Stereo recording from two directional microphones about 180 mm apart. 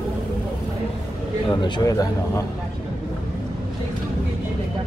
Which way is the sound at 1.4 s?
25° left (ahead or behind).